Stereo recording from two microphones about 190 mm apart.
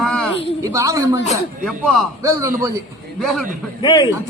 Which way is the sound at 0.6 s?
15° right (ahead or behind).